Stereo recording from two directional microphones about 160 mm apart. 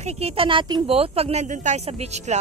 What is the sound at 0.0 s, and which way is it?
Speech, 40° right (ahead or behind).